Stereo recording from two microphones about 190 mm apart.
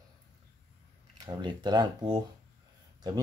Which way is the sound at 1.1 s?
25° right (ahead or behind).